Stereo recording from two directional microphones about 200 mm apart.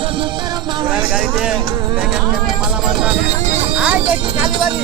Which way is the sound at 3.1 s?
30° right (ahead or behind).